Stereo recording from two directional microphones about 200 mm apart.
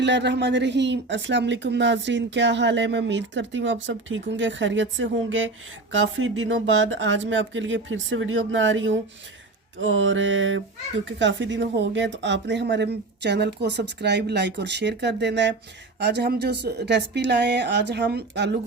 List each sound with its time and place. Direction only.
0.0 s speech: 60° right (ahead or behind)